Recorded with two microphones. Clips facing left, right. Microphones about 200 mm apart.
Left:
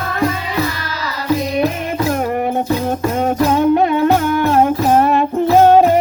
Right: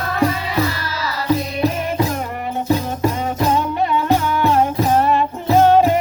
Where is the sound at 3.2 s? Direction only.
55° left (ahead or behind).